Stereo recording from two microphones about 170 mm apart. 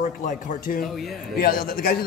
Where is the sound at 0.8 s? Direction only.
Centre (ahead or behind).